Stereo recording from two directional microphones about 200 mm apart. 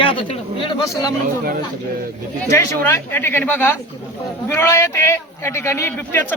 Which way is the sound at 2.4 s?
10° left (ahead or behind).